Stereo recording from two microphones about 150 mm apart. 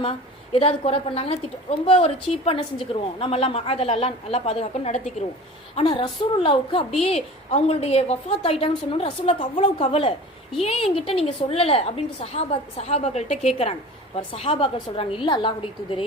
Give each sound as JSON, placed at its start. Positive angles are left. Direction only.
{"t": 0.5, "sound": "a woman's voice", "side_deg": 40}
{"t": 5.7, "sound": "a woman's voice", "side_deg": 35}